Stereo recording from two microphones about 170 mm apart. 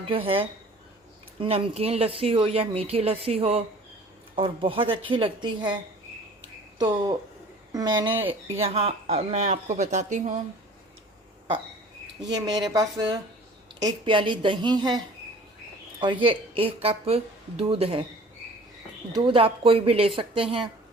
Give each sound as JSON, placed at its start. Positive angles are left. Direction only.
{"t": 0.1, "sound": "speech", "side_deg": -30}
{"t": 6.7, "sound": "a woman's voice", "side_deg": -25}
{"t": 8.5, "sound": "speech", "side_deg": -35}
{"t": 12.6, "sound": "a woman's voice", "side_deg": -20}
{"t": 19.1, "sound": "speech", "side_deg": -30}